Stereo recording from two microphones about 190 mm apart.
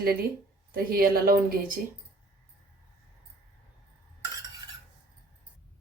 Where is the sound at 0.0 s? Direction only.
55° right (ahead or behind).